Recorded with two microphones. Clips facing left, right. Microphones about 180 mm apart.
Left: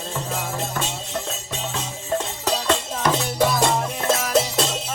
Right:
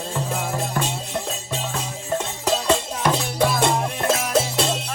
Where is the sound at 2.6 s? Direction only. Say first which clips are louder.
Even; 10° right (ahead or behind).